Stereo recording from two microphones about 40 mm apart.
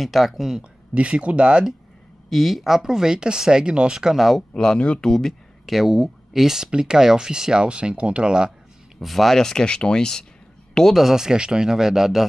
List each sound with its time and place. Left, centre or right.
0.0 s speech: centre
0.9 s speech: right
2.2 s speech: centre; by 4.1 s right
4.1 s speech: centre
4.7 s speech: left
5.0 s speech: centre
5.7 s speech: centre
6.7 s speech: right
9.0 s speech: centre
9.4 s speech: centre
10.7 s a sound: centre
11.0 s speech: centre